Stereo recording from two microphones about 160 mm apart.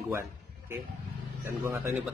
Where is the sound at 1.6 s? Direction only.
15° right (ahead or behind).